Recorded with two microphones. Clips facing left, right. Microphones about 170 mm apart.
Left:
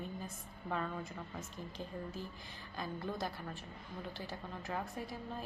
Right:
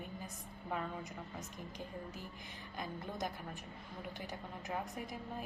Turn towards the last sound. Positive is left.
turn(degrees=-15)  # may be behind; listen again after turning